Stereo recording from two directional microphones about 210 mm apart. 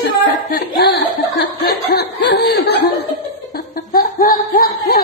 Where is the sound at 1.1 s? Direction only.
50° left (ahead or behind).